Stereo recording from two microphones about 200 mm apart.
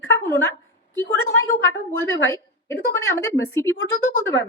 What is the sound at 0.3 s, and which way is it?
Speech, 15° left (ahead or behind).